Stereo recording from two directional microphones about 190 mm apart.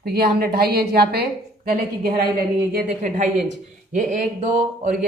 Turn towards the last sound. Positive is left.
turn(degrees=-40)  # may be behind; listen again after turning